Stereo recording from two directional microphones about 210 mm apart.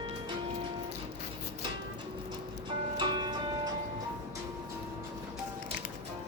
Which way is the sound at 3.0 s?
20° right (ahead or behind).